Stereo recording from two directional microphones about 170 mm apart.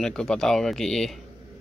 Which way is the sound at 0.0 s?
5° left (ahead or behind).